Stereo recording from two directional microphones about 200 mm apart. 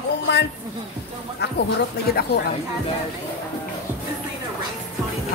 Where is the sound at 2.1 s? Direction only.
50° left (ahead or behind).